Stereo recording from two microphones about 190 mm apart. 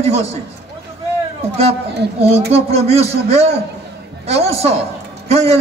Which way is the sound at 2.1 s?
30° right (ahead or behind).